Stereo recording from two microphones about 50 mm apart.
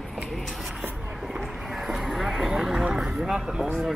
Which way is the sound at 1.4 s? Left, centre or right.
Centre.